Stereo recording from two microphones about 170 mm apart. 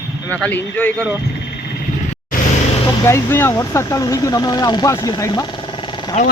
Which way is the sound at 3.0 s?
15° left (ahead or behind).